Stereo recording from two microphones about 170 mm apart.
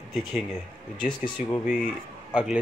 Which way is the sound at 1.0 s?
30° left (ahead or behind).